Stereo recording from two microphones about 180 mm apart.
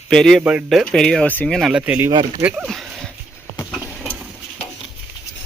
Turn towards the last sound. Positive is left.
turn(degrees=-10)  # may be behind; listen again after turning